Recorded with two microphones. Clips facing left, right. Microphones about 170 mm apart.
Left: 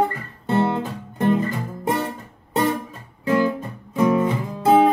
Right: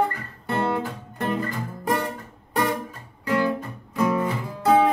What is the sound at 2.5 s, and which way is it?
Music, 25° left (ahead or behind).